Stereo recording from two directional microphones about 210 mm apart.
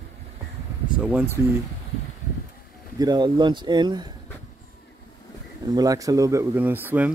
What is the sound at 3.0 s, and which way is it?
Speech, 20° right (ahead or behind).